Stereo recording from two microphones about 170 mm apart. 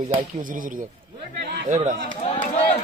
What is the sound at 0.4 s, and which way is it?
Speech, 55° right (ahead or behind).